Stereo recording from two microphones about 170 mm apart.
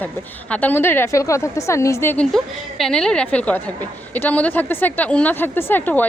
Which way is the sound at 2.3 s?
Centre (ahead or behind).